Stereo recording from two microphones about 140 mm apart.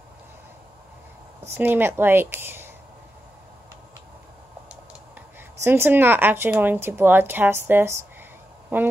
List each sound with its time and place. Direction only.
1.5 s a woman's voice: 15° right (ahead or behind)
5.6 s a woman's voice: 15° right (ahead or behind)
8.7 s a sound: 15° right (ahead or behind)